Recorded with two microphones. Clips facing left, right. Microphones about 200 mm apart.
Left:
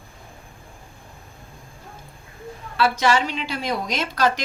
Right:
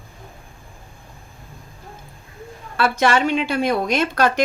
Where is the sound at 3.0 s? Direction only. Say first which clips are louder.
Right 3 dB; 55° right (ahead or behind).